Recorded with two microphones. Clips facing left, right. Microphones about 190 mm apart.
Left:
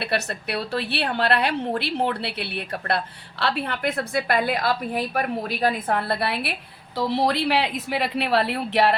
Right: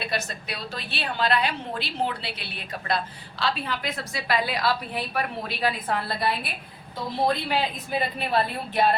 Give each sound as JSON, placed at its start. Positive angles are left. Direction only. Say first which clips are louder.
{"t": 0.0, "sound": "a woman's voice", "louder": "left 4 dB", "side_deg": 65}